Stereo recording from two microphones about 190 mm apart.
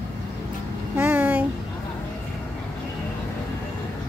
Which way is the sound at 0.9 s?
10° right (ahead or behind).